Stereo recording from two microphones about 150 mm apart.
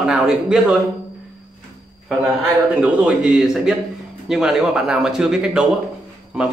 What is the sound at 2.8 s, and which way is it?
A man's voice, 5° right (ahead or behind).